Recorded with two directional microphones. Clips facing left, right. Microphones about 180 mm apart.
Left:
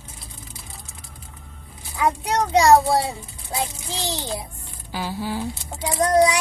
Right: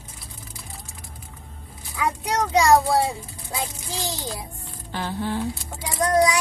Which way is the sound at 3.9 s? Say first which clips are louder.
Left 2 dB; 25° left (ahead or behind).